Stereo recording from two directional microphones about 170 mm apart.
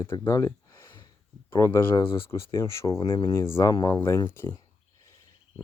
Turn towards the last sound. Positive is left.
turn(degrees=15)  # may be behind; listen again after turning